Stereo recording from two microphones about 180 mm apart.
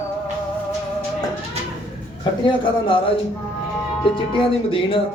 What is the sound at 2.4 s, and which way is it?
Speech, 30° left (ahead or behind).